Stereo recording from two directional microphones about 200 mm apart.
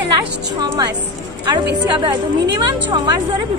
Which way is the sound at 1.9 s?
20° right (ahead or behind).